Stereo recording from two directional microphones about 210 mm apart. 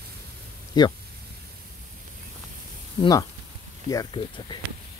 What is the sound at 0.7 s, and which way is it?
Speech, 20° left (ahead or behind).